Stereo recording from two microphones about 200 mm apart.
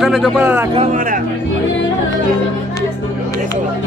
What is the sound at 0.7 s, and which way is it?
Speech, 35° right (ahead or behind).